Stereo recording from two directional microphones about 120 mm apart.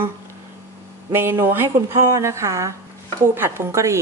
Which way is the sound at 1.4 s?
20° right (ahead or behind).